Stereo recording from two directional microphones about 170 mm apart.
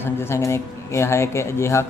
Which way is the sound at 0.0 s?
15° left (ahead or behind).